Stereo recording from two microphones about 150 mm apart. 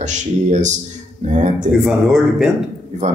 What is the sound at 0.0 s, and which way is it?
A man's voice, 55° right (ahead or behind).